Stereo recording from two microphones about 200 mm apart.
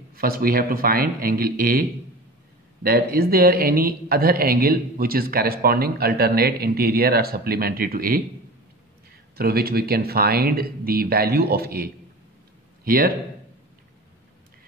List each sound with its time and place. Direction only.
0.1 s speech: 50° right (ahead or behind)
9.4 s speech: 50° right (ahead or behind)